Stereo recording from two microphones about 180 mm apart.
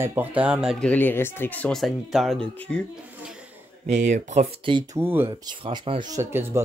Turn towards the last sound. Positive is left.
turn(degrees=-15)  # may be behind; listen again after turning